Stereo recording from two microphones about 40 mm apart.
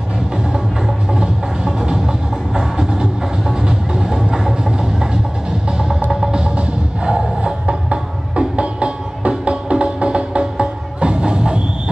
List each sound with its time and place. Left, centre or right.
0.5 s music: centre
4.6 s vehicle: centre
5.7 s music: centre
6.3 s a sound: right